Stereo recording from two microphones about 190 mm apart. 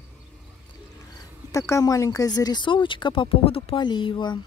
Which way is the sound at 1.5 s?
15° left (ahead or behind).